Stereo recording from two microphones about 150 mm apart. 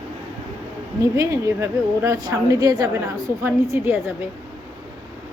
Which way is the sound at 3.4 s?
15° right (ahead or behind).